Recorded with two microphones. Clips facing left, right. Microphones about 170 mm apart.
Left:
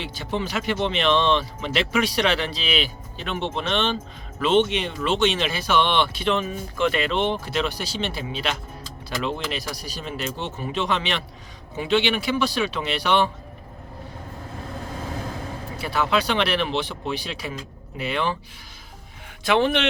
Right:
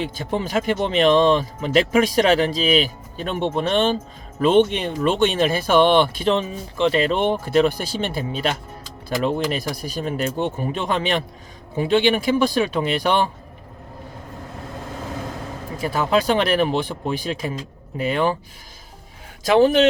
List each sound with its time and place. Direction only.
0.0 s speech: 45° right (ahead or behind)
4.5 s speech: 50° right (ahead or behind)
6.3 s speech: 30° right (ahead or behind); by 13.3 s 45° right (ahead or behind)
15.8 s speech: 45° right (ahead or behind)
19.5 s speech: 40° right (ahead or behind)